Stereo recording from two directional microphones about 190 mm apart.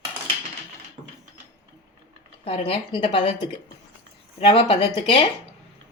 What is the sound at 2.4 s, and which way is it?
Speech, 30° left (ahead or behind).